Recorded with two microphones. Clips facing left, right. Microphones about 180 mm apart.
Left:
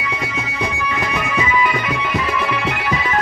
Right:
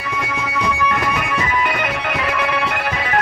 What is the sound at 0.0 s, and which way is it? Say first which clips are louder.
Music: right 1 dB; 55° right (ahead or behind).